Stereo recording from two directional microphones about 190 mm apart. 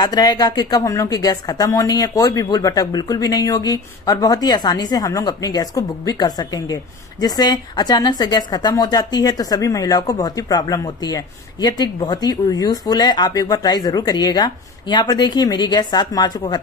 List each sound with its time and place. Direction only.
0.0 s a woman's voice: 20° left (ahead or behind)